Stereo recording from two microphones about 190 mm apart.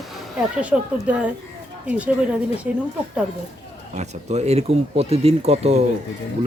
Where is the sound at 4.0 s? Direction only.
35° right (ahead or behind).